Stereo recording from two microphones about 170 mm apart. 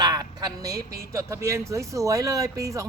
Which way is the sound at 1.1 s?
15° right (ahead or behind).